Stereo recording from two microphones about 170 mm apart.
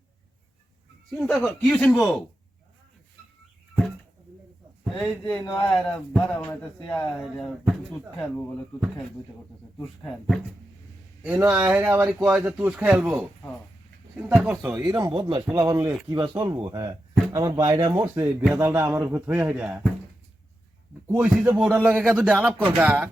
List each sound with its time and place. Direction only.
1.1 s speech: centre (ahead or behind)
4.9 s speech: centre (ahead or behind)
9.8 s speech: 5° left (ahead or behind)
11.2 s speech: 10° right (ahead or behind)
14.3 s speech: 5° right (ahead or behind)
14.8 s speech: 25° right (ahead or behind)
18.0 s speech: 10° right (ahead or behind)
21.2 s speech: 5° right (ahead or behind)
22.0 s speech: 5° left (ahead or behind)
22.3 s speech: 10° right (ahead or behind)